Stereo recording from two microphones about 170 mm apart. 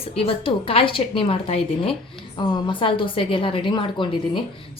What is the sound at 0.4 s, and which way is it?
A woman's voice, 30° left (ahead or behind).